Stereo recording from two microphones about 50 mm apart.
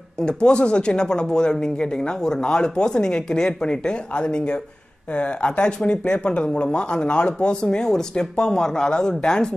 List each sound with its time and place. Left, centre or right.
0.2 s speech: centre